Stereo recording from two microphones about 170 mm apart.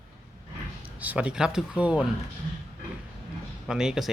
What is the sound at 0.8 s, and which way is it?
Speech, 10° right (ahead or behind).